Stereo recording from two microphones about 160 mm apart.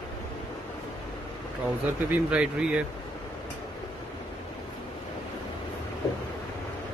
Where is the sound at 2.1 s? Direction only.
5° right (ahead or behind).